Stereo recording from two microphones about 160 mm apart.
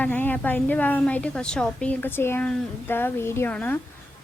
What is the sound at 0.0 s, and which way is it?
A woman's voice, 10° left (ahead or behind).